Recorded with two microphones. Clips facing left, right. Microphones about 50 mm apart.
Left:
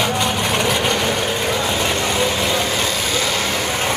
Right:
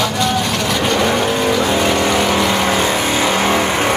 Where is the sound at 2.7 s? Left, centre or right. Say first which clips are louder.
Right 5 dB; right.